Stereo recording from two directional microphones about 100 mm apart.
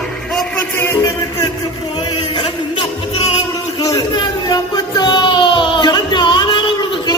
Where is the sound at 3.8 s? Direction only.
35° left (ahead or behind).